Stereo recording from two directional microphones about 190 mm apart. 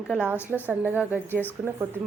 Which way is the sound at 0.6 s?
10° right (ahead or behind).